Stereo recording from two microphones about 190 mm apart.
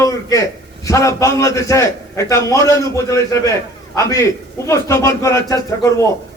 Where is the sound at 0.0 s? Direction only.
15° left (ahead or behind).